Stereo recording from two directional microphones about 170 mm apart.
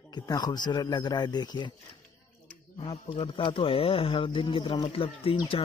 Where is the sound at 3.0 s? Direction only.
30° left (ahead or behind).